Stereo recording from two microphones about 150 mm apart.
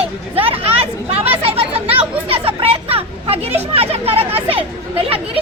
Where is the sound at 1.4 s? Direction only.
40° right (ahead or behind).